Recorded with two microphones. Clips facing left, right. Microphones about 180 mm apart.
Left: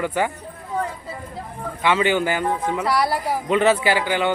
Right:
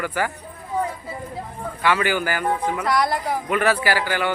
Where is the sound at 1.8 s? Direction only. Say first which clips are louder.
Left 2 dB; 20° left (ahead or behind).